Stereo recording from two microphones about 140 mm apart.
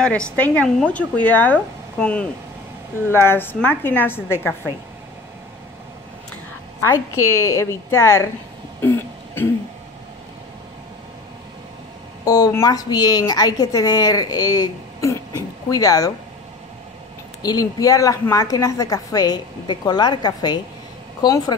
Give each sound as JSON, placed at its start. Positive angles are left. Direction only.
{"t": 0.0, "sound": "a woman's voice", "side_deg": 5}
{"t": 6.8, "sound": "a woman's voice", "side_deg": 20}
{"t": 8.8, "sound": "throat clearing", "side_deg": 15}
{"t": 12.3, "sound": "a woman's voice", "side_deg": 25}
{"t": 17.4, "sound": "a woman's voice", "side_deg": 30}